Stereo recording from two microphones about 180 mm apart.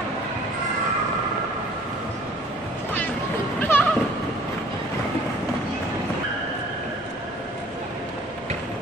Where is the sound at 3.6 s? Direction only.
10° left (ahead or behind).